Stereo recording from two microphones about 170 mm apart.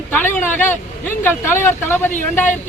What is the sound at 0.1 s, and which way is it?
Speech, 10° left (ahead or behind).